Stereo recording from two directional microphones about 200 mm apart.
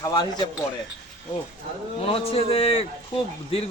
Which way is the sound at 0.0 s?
20° left (ahead or behind).